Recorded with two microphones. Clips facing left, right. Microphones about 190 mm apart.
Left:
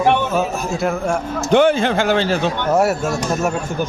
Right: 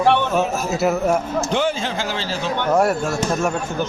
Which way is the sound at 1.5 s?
60° left (ahead or behind).